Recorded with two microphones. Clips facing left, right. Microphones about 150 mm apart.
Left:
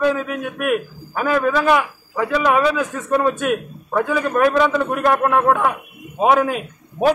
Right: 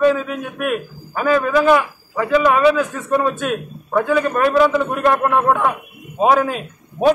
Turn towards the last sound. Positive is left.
turn(degrees=5)  # may be behind; listen again after turning